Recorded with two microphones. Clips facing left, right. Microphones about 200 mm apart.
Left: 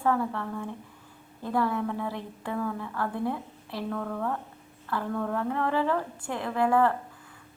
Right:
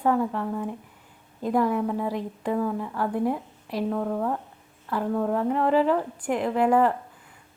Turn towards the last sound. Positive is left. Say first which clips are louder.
# right 3 dB
turn(degrees=-20)  # may be behind; listen again after turning